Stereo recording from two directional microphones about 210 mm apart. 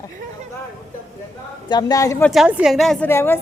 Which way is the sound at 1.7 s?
20° left (ahead or behind).